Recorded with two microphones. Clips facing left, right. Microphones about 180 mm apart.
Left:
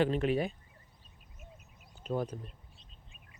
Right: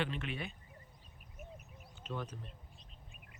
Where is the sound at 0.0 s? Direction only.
40° left (ahead or behind).